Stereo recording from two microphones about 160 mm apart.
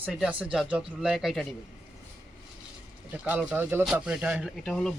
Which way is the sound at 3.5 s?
10° right (ahead or behind).